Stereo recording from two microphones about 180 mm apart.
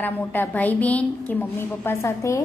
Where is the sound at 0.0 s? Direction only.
10° left (ahead or behind).